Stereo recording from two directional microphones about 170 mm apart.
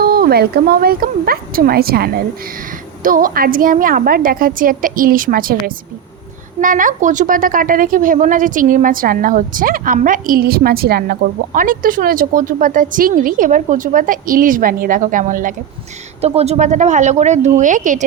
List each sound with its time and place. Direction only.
0.0 s a woman's voice: 60° right (ahead or behind)
16.2 s a woman's voice: 35° right (ahead or behind)